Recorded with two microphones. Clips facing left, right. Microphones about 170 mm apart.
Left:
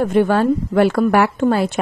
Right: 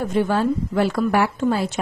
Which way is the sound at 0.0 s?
60° left (ahead or behind).